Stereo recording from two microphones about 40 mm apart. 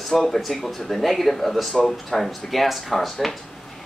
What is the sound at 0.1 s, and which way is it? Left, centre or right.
Speech, centre.